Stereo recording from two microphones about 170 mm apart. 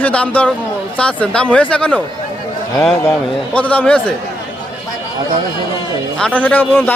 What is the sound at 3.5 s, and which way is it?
Speech, 10° left (ahead or behind).